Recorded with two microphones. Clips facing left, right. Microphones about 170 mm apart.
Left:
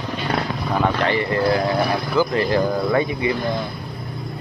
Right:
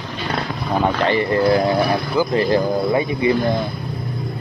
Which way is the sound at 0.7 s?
25° right (ahead or behind).